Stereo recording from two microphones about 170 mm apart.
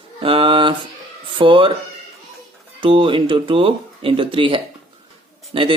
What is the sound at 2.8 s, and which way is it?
Speech, 30° right (ahead or behind).